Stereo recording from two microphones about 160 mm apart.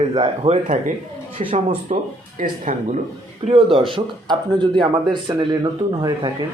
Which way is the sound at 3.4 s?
35° right (ahead or behind).